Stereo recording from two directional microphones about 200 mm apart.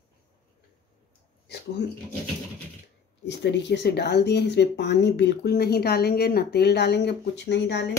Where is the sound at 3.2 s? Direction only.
60° left (ahead or behind).